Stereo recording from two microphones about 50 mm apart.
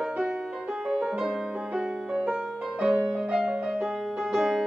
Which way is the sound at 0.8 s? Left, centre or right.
Centre.